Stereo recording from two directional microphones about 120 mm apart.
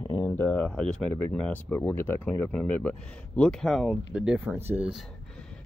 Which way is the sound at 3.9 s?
10° right (ahead or behind).